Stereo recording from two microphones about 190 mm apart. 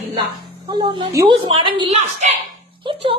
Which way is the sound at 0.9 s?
20° right (ahead or behind).